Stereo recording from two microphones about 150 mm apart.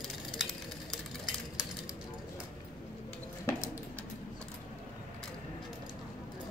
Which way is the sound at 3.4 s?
15° left (ahead or behind).